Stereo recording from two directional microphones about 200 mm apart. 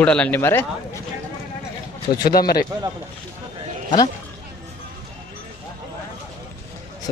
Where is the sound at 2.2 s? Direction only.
50° left (ahead or behind).